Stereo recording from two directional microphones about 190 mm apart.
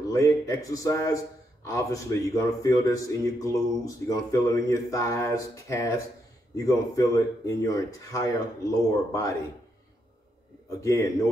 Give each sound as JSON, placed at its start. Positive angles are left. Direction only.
{"t": 0.1, "sound": "speech", "side_deg": 15}
{"t": 10.8, "sound": "speech", "side_deg": 15}